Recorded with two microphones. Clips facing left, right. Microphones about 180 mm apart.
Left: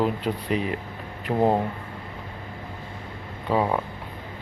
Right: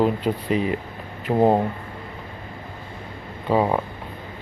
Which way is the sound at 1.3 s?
20° right (ahead or behind).